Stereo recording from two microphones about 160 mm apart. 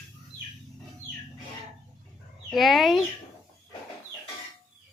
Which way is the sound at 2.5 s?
Centre (ahead or behind).